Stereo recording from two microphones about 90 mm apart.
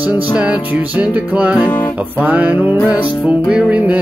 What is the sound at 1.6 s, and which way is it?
Music, 20° left (ahead or behind).